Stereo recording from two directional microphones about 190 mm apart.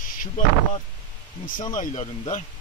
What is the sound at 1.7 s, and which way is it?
Speech, 35° left (ahead or behind).